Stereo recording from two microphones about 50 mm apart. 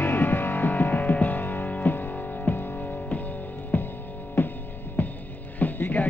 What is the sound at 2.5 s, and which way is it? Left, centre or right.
Music, left.